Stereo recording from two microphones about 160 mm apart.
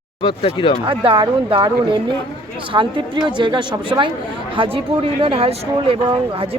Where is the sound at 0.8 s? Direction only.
35° right (ahead or behind).